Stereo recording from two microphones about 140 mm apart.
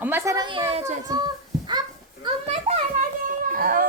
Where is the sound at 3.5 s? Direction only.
90° right.